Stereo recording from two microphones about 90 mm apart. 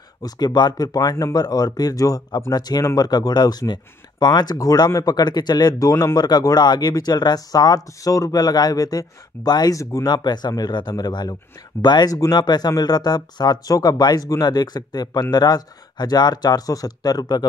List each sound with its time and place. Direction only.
0.2 s speech: 50° left (ahead or behind)
6.1 s speech: 50° left (ahead or behind)
10.0 s speech: 50° left (ahead or behind)